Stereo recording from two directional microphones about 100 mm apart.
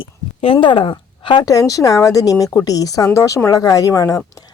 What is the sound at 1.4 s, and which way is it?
Speech, 35° left (ahead or behind).